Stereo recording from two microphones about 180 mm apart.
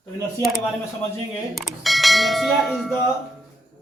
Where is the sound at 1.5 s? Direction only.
Centre (ahead or behind).